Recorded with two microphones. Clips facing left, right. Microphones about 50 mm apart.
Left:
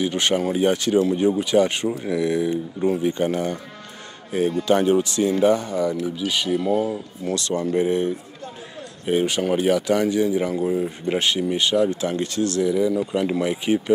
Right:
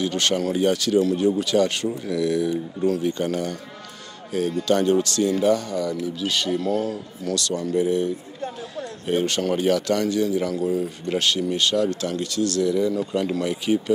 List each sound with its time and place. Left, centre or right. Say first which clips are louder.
0.0 s speech: left 1 dB; centre
9.0 s speech: left 2 dB; centre
12.6 s speech: left 1 dB; centre